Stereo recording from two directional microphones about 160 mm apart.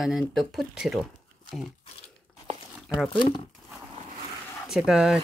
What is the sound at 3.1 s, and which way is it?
Speech, 30° left (ahead or behind).